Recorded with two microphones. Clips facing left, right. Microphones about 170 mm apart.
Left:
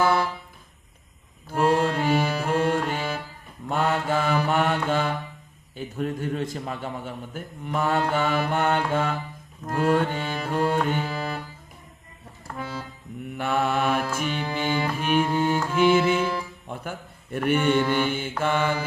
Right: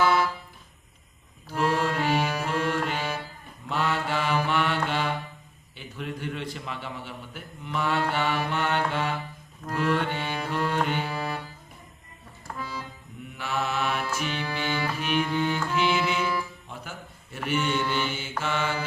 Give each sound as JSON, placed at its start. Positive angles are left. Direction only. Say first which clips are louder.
{"t": 0.0, "sound": "music", "louder": "left 1 dB", "side_deg": 50}
{"t": 1.5, "sound": "music", "louder": "left 4 dB", "side_deg": 50}
{"t": 3.7, "sound": "mantra", "louder": "left 4 dB", "side_deg": 50}
{"t": 5.7, "sound": "a man's voice", "louder": "left 7 dB", "side_deg": 45}
{"t": 9.6, "sound": "music", "louder": "left 4 dB", "side_deg": 45}
{"t": 12.5, "sound": "music", "louder": "left 3 dB", "side_deg": 55}
{"t": 13.3, "sound": "mantra", "louder": "left 5 dB", "side_deg": 50}
{"t": 14.5, "sound": "music", "louder": "left 5 dB", "side_deg": 45}
{"t": 17.3, "sound": "mantra", "louder": "left 6 dB", "side_deg": 55}